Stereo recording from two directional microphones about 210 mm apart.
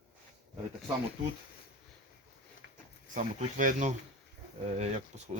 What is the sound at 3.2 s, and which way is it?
Speech, 40° right (ahead or behind).